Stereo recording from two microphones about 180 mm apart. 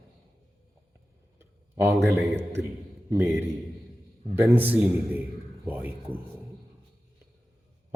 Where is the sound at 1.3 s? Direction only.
15° right (ahead or behind).